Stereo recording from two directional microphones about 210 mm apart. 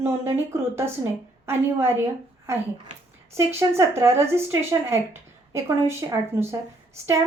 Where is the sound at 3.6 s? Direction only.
10° right (ahead or behind).